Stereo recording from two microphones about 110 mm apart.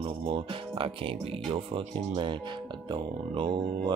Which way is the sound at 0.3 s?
55° right (ahead or behind).